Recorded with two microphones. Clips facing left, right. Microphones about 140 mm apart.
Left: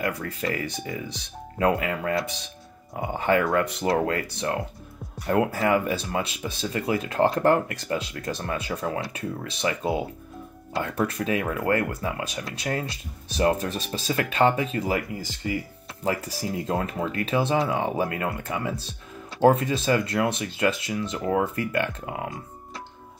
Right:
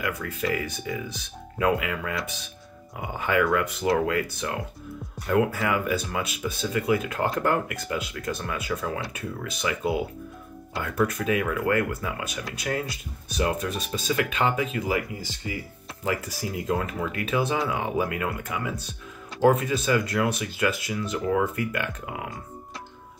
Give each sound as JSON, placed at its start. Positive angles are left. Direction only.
{"t": 0.0, "sound": "speech", "side_deg": 35}